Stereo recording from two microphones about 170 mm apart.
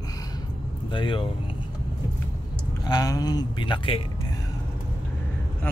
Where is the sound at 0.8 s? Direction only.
30° left (ahead or behind).